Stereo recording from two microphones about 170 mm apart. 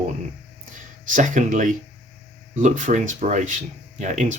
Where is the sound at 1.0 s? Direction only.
50° right (ahead or behind).